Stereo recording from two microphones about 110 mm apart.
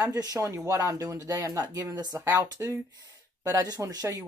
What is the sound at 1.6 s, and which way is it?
Speech, 35° right (ahead or behind).